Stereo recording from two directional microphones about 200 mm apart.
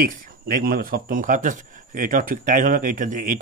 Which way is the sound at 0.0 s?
45° right (ahead or behind).